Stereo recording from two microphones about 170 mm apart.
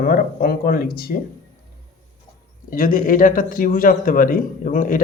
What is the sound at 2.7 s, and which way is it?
A man's voice, 55° left (ahead or behind).